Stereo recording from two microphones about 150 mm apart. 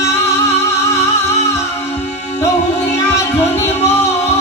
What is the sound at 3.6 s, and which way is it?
Music, 45° left (ahead or behind).